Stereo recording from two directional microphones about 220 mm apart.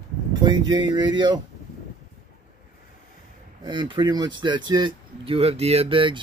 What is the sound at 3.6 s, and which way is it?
Speech, 20° right (ahead or behind).